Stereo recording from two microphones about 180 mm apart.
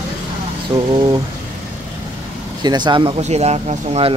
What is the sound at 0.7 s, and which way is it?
Speech, 20° right (ahead or behind).